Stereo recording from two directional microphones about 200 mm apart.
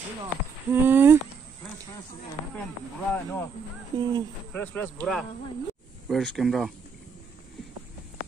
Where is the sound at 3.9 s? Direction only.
20° right (ahead or behind).